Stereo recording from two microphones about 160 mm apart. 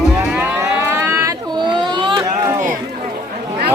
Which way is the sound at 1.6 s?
30° right (ahead or behind).